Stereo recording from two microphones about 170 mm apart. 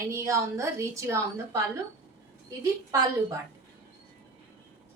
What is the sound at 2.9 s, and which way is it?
Speech, 20° right (ahead or behind).